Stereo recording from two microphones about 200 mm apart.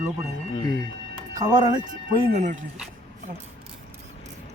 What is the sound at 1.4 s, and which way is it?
Speech, 20° right (ahead or behind).